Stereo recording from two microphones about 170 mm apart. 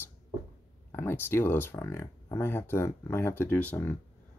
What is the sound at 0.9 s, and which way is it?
Speech, 15° left (ahead or behind).